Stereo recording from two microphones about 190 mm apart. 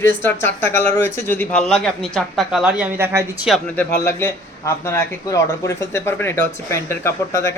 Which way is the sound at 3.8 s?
15° left (ahead or behind).